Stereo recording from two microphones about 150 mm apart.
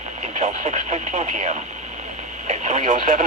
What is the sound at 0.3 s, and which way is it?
Speech, 45° right (ahead or behind).